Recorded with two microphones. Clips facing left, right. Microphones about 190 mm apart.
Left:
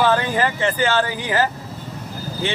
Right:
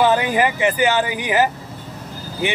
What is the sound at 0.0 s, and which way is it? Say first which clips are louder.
Speech: right 2 dB; 15° right (ahead or behind).